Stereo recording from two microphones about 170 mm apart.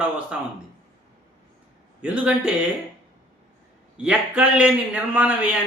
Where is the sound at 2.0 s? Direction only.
5° right (ahead or behind).